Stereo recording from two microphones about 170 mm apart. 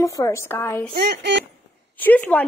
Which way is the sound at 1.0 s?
85° right.